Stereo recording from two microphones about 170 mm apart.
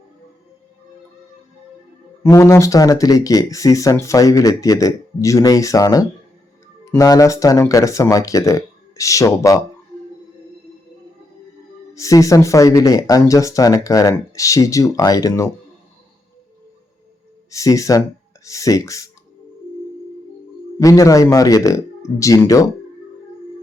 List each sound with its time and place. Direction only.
2.3 s speech: 15° left (ahead or behind)
11.9 s speech: 20° left (ahead or behind)
17.5 s speech: 20° left (ahead or behind)
20.7 s speech: 20° left (ahead or behind)